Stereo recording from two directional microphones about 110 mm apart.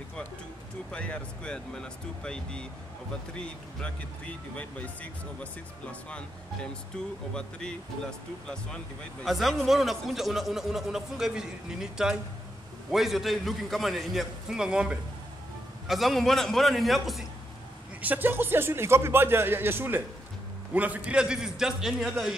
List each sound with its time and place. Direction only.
0.9 s a man's voice: 10° left (ahead or behind)
18.0 s a man's voice: 15° right (ahead or behind)